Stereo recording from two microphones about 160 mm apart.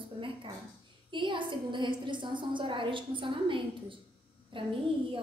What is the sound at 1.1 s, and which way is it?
A woman's voice, 30° right (ahead or behind).